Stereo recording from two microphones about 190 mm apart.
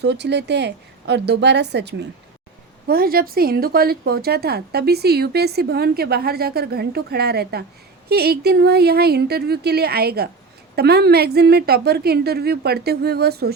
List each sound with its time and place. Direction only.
0.0 s a woman's voice: 65° right (ahead or behind)
2.8 s a woman's voice: 50° right (ahead or behind)